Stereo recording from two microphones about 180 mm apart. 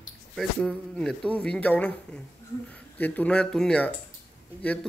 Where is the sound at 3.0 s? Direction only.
10° left (ahead or behind).